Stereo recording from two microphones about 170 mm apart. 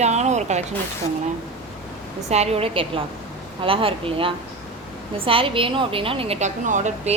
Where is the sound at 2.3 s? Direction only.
40° right (ahead or behind).